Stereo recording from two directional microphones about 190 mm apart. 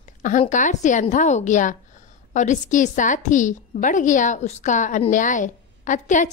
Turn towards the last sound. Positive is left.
turn(degrees=40)  # may be behind; listen again after turning